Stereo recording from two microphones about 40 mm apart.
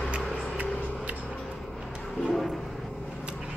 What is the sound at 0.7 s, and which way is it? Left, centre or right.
Music, left.